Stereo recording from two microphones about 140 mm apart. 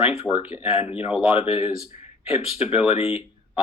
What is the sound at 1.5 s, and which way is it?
Speech, 10° right (ahead or behind).